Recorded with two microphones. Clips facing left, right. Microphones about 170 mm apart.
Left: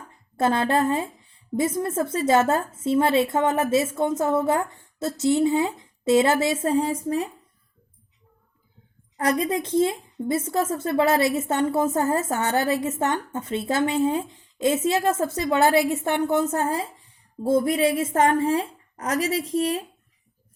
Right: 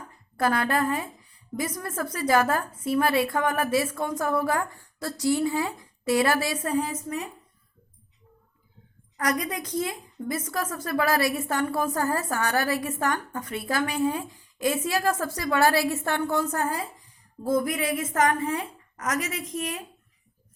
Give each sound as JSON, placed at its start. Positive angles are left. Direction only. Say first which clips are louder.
{"t": 0.3, "sound": "a woman's voice", "louder": "left 3 dB", "side_deg": 25}
{"t": 9.1, "sound": "a woman's voice", "louder": "left 5 dB", "side_deg": 25}